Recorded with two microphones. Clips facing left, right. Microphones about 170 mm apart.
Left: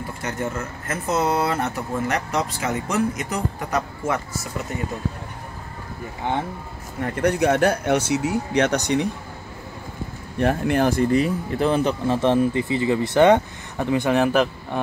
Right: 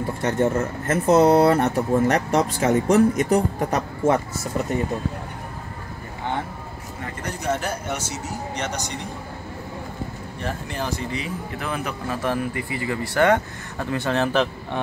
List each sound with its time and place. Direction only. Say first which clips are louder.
0.2 s speech: right 7 dB; 40° right (ahead or behind)
7.2 s speech: left 8 dB; 65° left (ahead or behind)
10.4 s speech: left 10 dB; 60° left (ahead or behind)
11.5 s speech: left 10 dB; 30° left (ahead or behind); by 14.8 s 10° left (ahead or behind)